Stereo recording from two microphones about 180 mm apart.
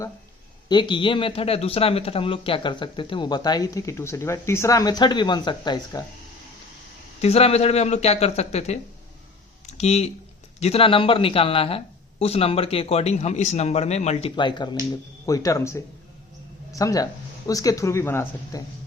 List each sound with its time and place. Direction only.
0.7 s speech: 25° left (ahead or behind)
7.2 s speech: 35° left (ahead or behind)
9.6 s a sound: 40° left (ahead or behind)
10.6 s speech: 35° left (ahead or behind); by 18.6 s 15° left (ahead or behind)